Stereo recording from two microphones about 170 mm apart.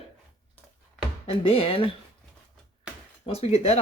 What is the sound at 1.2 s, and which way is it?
Speech, 35° left (ahead or behind).